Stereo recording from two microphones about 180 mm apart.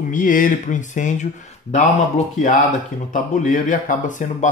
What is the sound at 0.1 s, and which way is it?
Speech, 50° left (ahead or behind).